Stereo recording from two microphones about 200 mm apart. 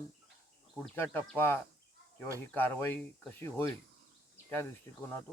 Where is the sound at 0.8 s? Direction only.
10° left (ahead or behind).